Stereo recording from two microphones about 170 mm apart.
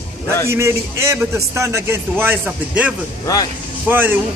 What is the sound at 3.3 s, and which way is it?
Speech, 20° left (ahead or behind).